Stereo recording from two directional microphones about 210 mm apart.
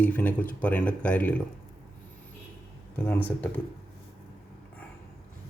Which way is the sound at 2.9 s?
10° left (ahead or behind).